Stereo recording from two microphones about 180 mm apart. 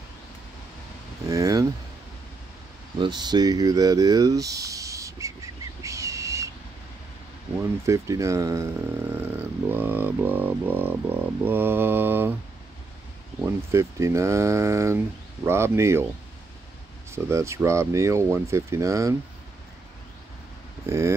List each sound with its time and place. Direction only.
1.3 s a sound: 20° right (ahead or behind)
3.0 s a sound: 25° right (ahead or behind)
7.8 s speech: 15° right (ahead or behind)
13.7 s speech: 15° right (ahead or behind)
17.1 s speech: 15° right (ahead or behind)
20.8 s speech: 15° right (ahead or behind)